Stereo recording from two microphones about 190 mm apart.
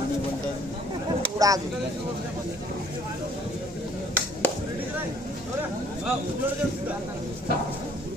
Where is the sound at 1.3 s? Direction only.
20° right (ahead or behind).